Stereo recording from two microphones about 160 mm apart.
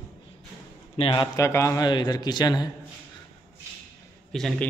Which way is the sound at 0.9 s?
30° left (ahead or behind).